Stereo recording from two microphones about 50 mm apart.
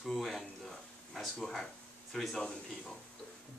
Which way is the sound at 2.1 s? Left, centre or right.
Centre.